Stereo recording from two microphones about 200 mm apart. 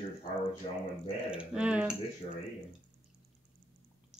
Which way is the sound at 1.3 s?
5° right (ahead or behind).